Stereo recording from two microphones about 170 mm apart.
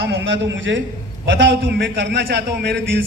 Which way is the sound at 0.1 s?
90° right.